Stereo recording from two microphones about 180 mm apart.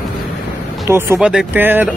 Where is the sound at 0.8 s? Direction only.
15° right (ahead or behind).